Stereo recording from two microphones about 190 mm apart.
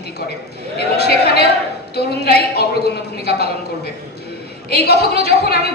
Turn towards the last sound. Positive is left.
turn(degrees=60)  # may be behind; listen again after turning